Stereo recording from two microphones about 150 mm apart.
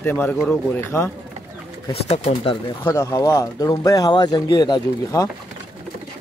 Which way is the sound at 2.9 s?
20° left (ahead or behind).